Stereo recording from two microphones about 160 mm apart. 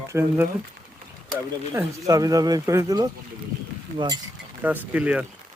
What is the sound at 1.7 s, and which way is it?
Speech, 20° right (ahead or behind).